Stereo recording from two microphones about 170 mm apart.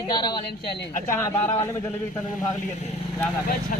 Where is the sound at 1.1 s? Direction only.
15° left (ahead or behind).